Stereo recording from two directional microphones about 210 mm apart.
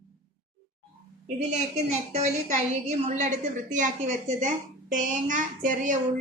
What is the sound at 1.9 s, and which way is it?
A woman's voice, 30° right (ahead or behind).